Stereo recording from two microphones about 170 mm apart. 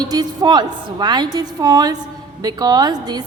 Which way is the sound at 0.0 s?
25° right (ahead or behind).